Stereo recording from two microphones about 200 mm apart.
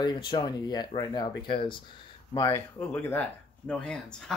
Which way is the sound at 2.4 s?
20° left (ahead or behind).